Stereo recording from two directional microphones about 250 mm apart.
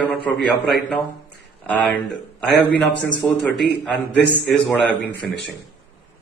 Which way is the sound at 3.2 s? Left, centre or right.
Centre.